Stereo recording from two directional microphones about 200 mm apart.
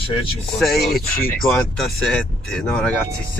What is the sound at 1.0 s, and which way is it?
Speech, 45° left (ahead or behind).